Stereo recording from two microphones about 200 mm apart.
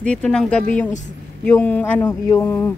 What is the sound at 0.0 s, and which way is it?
Speech, 5° left (ahead or behind).